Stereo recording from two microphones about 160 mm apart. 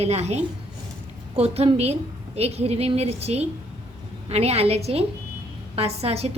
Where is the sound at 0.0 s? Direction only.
40° right (ahead or behind).